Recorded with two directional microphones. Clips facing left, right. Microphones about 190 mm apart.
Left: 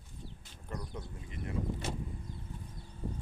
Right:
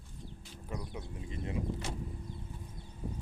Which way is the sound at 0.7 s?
5° right (ahead or behind).